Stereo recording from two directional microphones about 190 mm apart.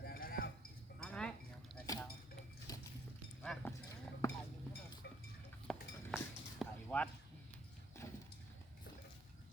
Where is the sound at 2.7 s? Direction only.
20° left (ahead or behind).